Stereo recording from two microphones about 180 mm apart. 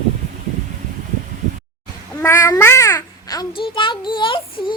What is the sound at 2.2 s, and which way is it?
A child's voice, 15° left (ahead or behind).